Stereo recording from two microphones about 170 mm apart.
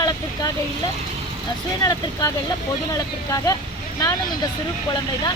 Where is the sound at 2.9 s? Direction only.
20° left (ahead or behind).